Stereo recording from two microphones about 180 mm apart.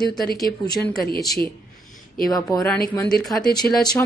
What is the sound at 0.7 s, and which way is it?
Speech, centre (ahead or behind).